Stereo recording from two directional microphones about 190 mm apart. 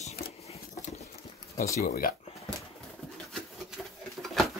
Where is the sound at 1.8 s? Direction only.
50° left (ahead or behind).